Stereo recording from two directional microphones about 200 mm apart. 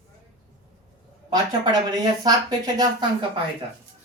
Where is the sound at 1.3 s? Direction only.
20° right (ahead or behind).